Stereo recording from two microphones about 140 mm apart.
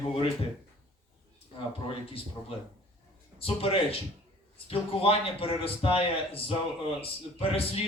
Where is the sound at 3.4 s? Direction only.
40° left (ahead or behind).